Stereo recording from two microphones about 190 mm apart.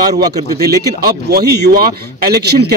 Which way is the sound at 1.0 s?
55° right (ahead or behind).